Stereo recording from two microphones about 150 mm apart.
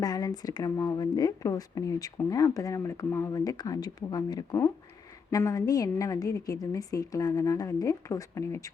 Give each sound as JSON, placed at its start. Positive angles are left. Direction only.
{"t": 0.0, "sound": "a woman's voice", "side_deg": 25}